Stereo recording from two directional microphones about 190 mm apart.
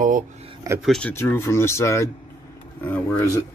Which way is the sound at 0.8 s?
5° left (ahead or behind).